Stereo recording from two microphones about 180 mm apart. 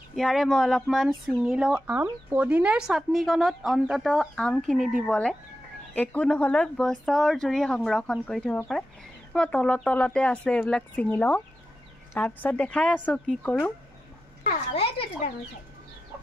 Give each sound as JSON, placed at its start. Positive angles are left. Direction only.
{"t": 0.1, "sound": "speech", "side_deg": 0}
{"t": 14.8, "sound": "speech", "side_deg": 35}